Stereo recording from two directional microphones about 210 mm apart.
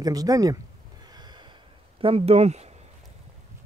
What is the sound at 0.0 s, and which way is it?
Speech, 15° right (ahead or behind).